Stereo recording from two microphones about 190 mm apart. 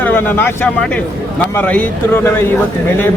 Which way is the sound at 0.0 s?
10° left (ahead or behind).